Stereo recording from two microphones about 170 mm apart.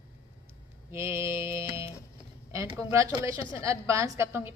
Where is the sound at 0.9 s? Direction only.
15° right (ahead or behind).